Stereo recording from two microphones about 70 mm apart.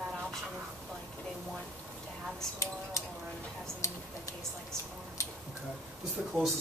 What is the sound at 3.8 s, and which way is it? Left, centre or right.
Typing, left.